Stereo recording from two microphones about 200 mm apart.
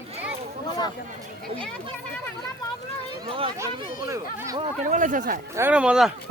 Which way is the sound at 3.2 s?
25° right (ahead or behind).